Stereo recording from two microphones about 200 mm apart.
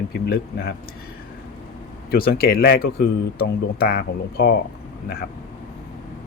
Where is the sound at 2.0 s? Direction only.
50° left (ahead or behind).